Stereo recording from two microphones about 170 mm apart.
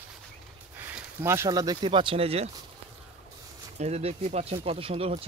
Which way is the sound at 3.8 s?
40° right (ahead or behind).